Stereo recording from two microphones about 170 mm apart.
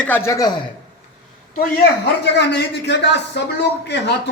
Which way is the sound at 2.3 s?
90° left.